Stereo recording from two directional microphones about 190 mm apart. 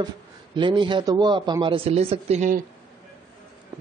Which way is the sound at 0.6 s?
25° right (ahead or behind).